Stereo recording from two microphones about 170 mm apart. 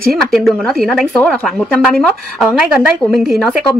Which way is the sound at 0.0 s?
Centre (ahead or behind).